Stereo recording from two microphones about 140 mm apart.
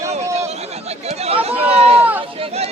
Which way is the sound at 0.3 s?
50° right (ahead or behind).